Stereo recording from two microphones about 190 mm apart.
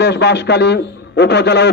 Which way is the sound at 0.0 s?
65° left (ahead or behind).